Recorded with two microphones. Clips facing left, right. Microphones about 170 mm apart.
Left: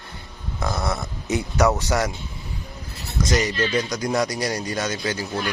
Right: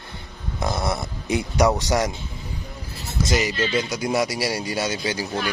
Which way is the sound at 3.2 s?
25° right (ahead or behind).